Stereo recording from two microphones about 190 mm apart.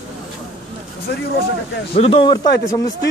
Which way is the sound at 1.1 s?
60° left (ahead or behind).